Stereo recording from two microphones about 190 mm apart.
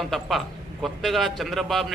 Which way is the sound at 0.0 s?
Centre (ahead or behind).